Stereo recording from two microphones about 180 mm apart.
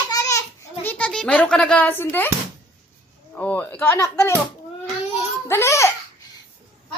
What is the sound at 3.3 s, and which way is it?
Speech, 10° left (ahead or behind).